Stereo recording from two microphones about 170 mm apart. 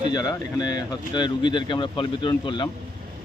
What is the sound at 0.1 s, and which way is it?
Speech, 25° left (ahead or behind).